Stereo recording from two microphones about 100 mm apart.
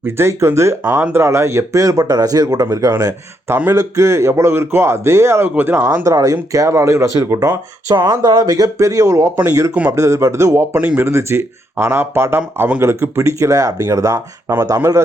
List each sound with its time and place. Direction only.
0.0 s speech: 25° right (ahead or behind)
3.5 s speech: 25° right (ahead or behind)
12.8 s speech: 25° right (ahead or behind)